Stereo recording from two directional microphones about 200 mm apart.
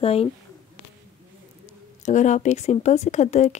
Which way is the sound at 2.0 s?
35° left (ahead or behind).